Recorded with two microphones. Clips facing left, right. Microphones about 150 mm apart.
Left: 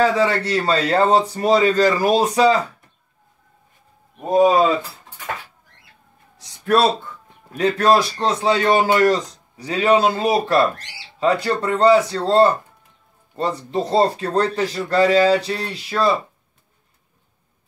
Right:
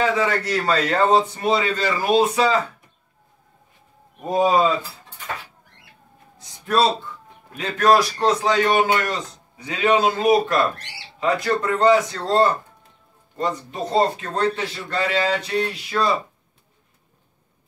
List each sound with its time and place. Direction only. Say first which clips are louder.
0.0 s a man's voice: left 3 dB; 35° left (ahead or behind)
6.3 s a sound: left 3 dB; 65° left (ahead or behind)
7.5 s a man's voice: left 2 dB; 30° left (ahead or behind)